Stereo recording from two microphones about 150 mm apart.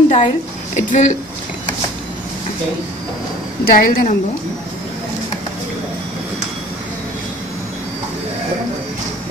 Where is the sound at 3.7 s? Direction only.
75° left (ahead or behind).